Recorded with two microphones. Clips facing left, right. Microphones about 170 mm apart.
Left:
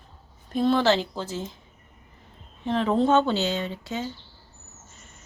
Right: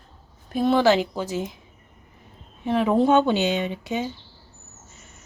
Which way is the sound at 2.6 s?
10° right (ahead or behind).